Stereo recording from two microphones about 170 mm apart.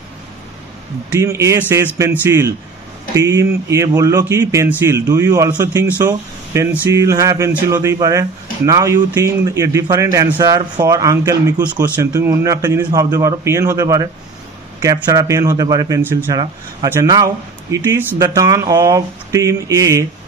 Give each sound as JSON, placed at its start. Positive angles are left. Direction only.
{"t": 1.1, "sound": "speech", "side_deg": -20}